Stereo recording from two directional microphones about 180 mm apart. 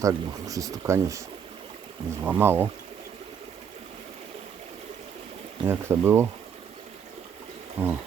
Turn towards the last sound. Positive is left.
turn(degrees=-10)  # may be behind; listen again after turning